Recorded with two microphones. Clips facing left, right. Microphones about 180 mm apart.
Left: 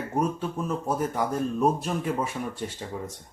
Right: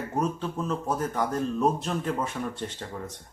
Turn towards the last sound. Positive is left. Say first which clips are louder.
# left 2 dB
turn(degrees=10)  # may be behind; listen again after turning